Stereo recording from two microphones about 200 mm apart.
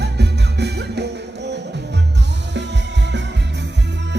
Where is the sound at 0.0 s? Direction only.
55° right (ahead or behind).